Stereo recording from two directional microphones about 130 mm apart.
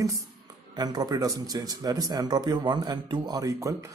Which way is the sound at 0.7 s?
30° right (ahead or behind).